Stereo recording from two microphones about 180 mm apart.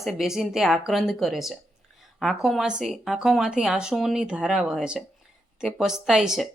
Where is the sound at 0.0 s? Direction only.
Centre (ahead or behind).